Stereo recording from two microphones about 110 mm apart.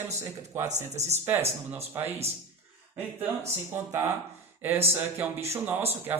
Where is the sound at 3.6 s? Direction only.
20° right (ahead or behind).